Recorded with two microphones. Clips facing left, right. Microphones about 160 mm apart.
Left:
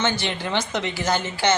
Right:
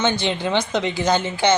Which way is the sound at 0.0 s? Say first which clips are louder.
Right 4 dB; 20° right (ahead or behind).